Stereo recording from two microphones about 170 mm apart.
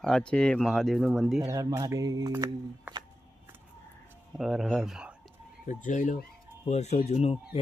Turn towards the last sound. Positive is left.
turn(degrees=40)  # may be behind; listen again after turning